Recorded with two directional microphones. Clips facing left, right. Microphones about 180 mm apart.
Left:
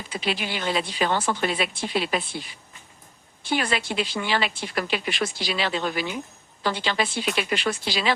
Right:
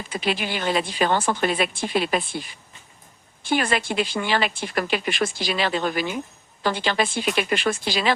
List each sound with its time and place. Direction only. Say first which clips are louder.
0.1 s a woman's voice: right 2 dB; 50° right (ahead or behind)
3.4 s a woman's voice: right 3 dB; 50° right (ahead or behind)